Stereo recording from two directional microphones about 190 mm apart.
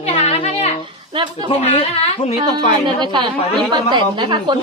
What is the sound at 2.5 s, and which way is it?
Speech, 25° right (ahead or behind).